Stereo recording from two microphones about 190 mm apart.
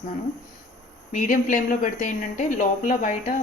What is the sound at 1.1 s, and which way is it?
Speech, 40° left (ahead or behind).